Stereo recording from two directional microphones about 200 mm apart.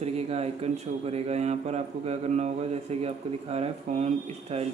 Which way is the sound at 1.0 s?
30° right (ahead or behind).